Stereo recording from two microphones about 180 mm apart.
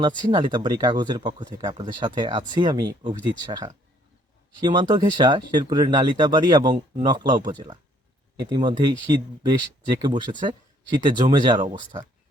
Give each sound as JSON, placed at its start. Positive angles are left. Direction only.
{"t": 0.3, "sound": "speech", "side_deg": -25}